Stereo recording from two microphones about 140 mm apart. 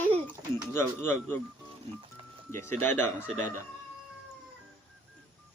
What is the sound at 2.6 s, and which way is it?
Speech, 15° left (ahead or behind).